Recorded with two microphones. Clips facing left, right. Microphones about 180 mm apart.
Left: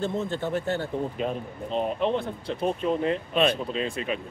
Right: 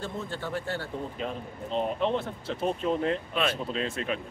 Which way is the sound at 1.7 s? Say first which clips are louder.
Left 2 dB; centre (ahead or behind).